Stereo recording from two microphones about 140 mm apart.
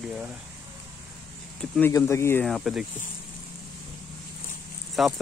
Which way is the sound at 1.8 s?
20° left (ahead or behind).